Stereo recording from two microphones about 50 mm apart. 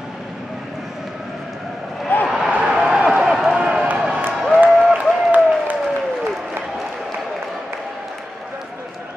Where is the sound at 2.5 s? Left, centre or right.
Right.